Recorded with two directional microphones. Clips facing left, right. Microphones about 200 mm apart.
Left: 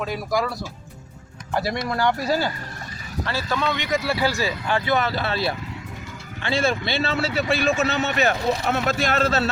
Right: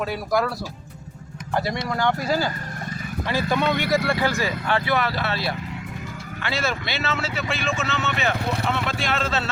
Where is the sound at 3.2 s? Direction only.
15° right (ahead or behind).